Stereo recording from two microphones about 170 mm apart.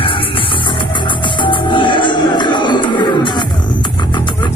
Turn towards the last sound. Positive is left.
turn(degrees=25)  # may be behind; listen again after turning